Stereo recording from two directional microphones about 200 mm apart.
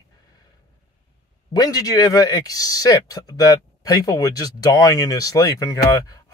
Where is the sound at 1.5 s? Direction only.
20° left (ahead or behind).